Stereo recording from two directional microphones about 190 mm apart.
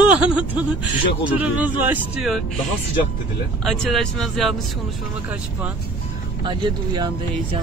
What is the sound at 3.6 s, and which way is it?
Speech, centre (ahead or behind).